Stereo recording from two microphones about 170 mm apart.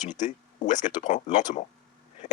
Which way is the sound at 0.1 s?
45° left (ahead or behind).